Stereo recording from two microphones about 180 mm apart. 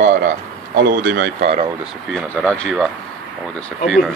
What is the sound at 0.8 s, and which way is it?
Speech, 60° right (ahead or behind).